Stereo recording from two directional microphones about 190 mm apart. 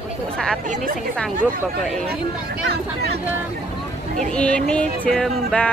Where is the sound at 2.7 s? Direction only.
55° right (ahead or behind).